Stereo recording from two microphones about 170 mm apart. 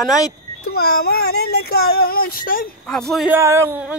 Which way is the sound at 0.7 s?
65° left (ahead or behind).